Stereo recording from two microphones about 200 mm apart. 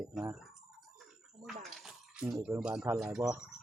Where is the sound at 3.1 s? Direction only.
5° right (ahead or behind).